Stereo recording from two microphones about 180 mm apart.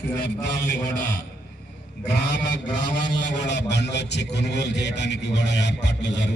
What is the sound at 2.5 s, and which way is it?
A man's voice, 75° left (ahead or behind).